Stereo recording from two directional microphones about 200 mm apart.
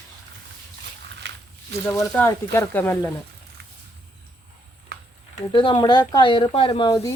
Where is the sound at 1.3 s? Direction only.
60° right (ahead or behind).